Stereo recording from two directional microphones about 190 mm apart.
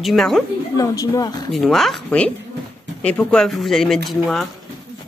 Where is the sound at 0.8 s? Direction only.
20° left (ahead or behind).